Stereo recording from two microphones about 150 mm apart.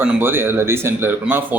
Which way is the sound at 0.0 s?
15° right (ahead or behind).